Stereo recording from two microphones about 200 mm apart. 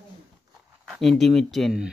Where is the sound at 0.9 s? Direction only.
Centre (ahead or behind).